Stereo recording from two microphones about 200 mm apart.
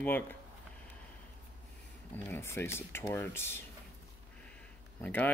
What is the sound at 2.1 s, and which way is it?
Speech, 10° left (ahead or behind).